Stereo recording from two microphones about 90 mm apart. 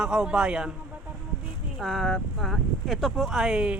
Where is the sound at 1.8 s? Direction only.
Centre (ahead or behind).